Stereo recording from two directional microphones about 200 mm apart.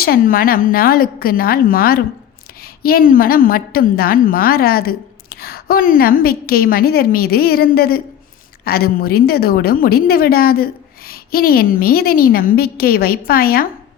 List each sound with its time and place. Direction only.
0.0 s a woman's voice: 50° left (ahead or behind)